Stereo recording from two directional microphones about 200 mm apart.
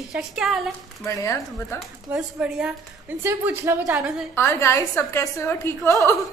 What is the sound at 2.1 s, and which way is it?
A woman's voice, 5° right (ahead or behind).